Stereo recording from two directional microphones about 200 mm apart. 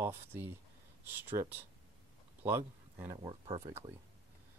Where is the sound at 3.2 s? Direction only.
30° right (ahead or behind).